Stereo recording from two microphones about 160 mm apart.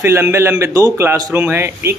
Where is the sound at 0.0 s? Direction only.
15° right (ahead or behind).